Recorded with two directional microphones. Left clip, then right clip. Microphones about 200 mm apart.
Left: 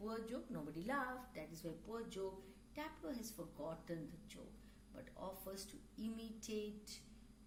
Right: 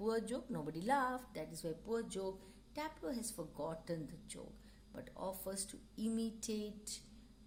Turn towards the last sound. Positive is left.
turn(degrees=-55)  # may be behind; listen again after turning